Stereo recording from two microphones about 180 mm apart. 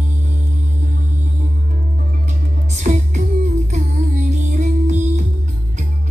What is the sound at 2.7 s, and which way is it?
Music, 40° right (ahead or behind).